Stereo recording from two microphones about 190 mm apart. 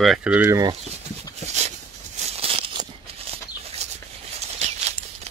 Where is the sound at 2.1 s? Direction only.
35° right (ahead or behind).